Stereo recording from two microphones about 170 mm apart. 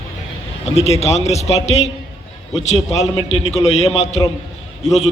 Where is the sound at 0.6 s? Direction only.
40° left (ahead or behind).